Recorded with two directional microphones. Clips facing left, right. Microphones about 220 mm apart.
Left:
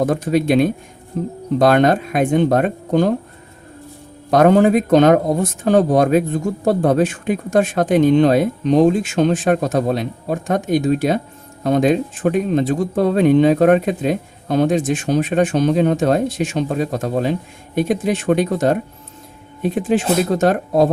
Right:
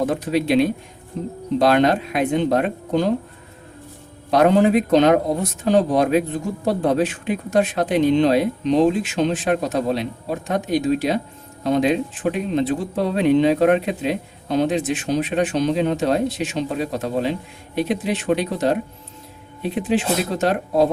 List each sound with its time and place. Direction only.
0.0 s speech: 45° left (ahead or behind)
4.3 s speech: 45° left (ahead or behind)